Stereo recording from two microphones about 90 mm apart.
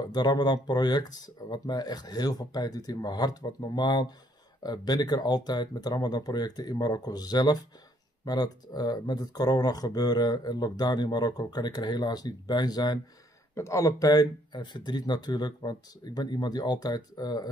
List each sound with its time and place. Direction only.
0.1 s speech: 50° left (ahead or behind)
13.6 s speech: 35° left (ahead or behind)